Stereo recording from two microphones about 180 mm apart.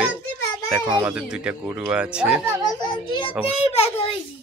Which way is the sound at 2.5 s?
20° left (ahead or behind).